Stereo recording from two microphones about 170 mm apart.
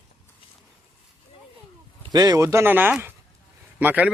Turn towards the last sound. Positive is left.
turn(degrees=-10)  # may be behind; listen again after turning